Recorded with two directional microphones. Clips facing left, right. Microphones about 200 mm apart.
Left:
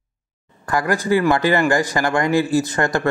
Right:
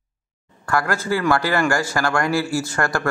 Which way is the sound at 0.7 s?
15° left (ahead or behind).